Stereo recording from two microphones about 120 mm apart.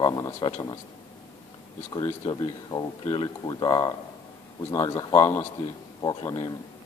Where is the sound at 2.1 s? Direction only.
40° left (ahead or behind).